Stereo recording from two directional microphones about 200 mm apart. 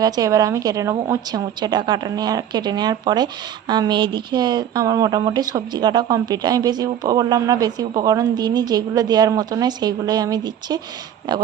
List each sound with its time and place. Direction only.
0.0 s speech: 20° right (ahead or behind)